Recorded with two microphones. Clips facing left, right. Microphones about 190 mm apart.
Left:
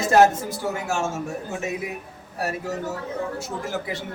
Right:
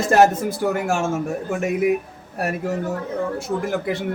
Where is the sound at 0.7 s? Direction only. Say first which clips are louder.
Right 2 dB; 60° right (ahead or behind).